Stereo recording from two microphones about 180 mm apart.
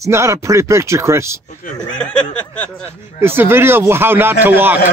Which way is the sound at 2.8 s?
15° right (ahead or behind).